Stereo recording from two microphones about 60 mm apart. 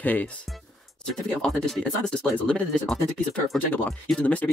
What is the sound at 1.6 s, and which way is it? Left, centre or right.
Speech, centre.